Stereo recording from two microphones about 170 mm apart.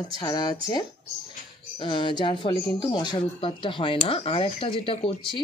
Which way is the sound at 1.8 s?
30° left (ahead or behind).